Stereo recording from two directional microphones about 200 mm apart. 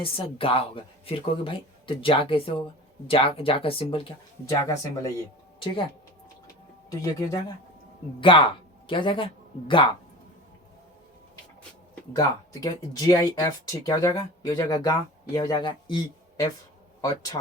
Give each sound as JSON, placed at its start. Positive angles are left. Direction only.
{"t": 0.0, "sound": "speech", "side_deg": 25}
{"t": 4.4, "sound": "speech", "side_deg": 15}
{"t": 6.9, "sound": "speech", "side_deg": 15}
{"t": 12.1, "sound": "speech", "side_deg": 15}